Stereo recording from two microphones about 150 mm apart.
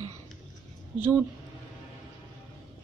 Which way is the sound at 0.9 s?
15° right (ahead or behind).